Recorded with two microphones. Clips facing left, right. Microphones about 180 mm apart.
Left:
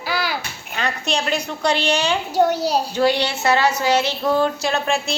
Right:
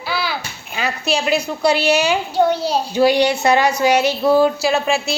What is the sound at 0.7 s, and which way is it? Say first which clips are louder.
A woman's voice: right 3 dB; 5° right (ahead or behind).